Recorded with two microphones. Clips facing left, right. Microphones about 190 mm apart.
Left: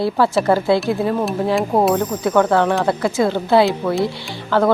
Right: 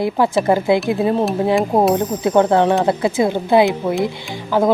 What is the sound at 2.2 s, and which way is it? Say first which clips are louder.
A woman's voice: right 2 dB; 20° right (ahead or behind).